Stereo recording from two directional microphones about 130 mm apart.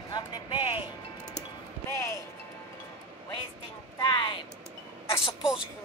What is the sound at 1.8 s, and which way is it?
Speech, 20° left (ahead or behind).